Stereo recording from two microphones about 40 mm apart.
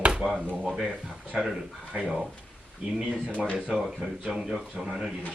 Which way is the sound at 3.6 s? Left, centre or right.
Centre.